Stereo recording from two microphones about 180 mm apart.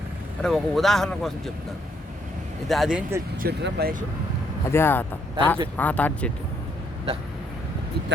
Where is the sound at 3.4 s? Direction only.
60° right (ahead or behind).